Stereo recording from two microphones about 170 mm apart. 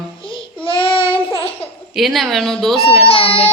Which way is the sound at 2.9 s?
35° left (ahead or behind).